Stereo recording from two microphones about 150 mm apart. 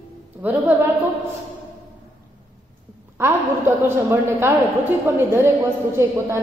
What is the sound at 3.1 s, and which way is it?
A woman's voice, 15° right (ahead or behind).